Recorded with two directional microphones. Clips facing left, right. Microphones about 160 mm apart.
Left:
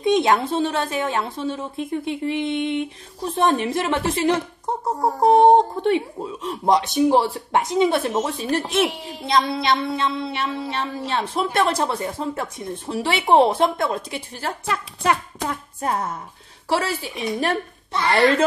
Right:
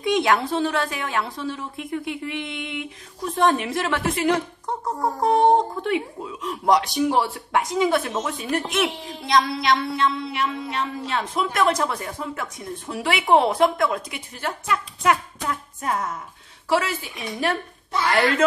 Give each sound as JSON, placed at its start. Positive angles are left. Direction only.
{"t": 0.0, "sound": "speech", "side_deg": 25}
{"t": 15.4, "sound": "music", "side_deg": 35}
{"t": 16.6, "sound": "a woman's voice", "side_deg": 35}